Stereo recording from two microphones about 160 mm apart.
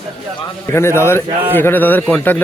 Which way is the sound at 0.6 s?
15° left (ahead or behind).